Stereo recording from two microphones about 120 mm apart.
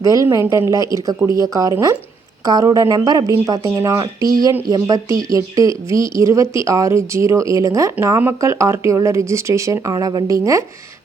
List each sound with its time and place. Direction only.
0.0 s a woman's voice: 25° right (ahead or behind)